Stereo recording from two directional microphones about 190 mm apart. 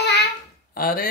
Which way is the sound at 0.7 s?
50° left (ahead or behind).